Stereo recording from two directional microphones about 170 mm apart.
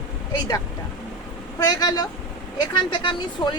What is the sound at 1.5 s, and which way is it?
Speech, 20° left (ahead or behind).